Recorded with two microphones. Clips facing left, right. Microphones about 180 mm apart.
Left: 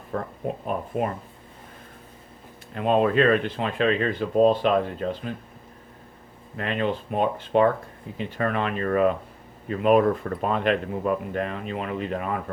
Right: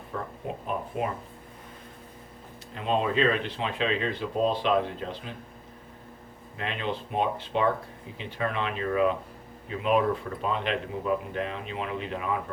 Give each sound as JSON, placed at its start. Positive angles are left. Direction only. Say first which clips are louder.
{"t": 0.1, "sound": "speech", "louder": "left 5 dB", "side_deg": 50}
{"t": 2.7, "sound": "speech", "louder": "left 6 dB", "side_deg": 55}
{"t": 6.6, "sound": "speech", "louder": "left 6 dB", "side_deg": 50}